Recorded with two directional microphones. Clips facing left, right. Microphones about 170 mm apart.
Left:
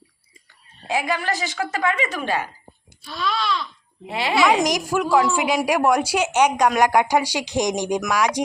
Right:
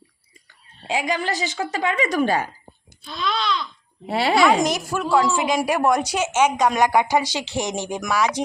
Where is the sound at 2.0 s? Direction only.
40° right (ahead or behind).